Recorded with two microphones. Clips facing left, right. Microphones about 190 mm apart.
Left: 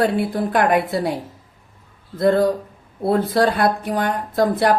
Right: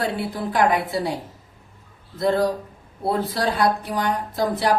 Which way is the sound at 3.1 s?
55° left (ahead or behind).